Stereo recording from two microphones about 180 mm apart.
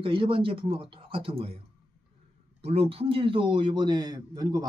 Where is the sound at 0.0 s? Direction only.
30° right (ahead or behind).